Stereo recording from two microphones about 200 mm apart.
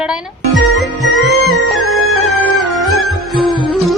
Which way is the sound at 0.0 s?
Centre (ahead or behind).